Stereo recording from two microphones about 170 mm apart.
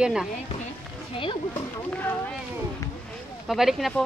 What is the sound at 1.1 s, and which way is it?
Speech, 30° left (ahead or behind).